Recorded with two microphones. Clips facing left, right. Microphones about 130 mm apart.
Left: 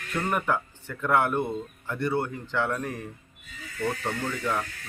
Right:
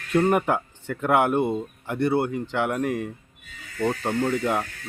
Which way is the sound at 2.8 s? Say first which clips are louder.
Right 8 dB; 80° right.